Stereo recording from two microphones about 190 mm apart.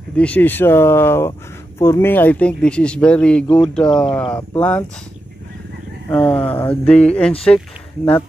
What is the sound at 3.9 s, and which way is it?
Speech, 25° left (ahead or behind).